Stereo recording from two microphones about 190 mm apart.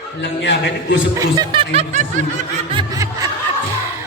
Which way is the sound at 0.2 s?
65° left (ahead or behind).